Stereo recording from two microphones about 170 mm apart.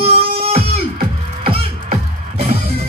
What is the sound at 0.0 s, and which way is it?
Music, 35° right (ahead or behind).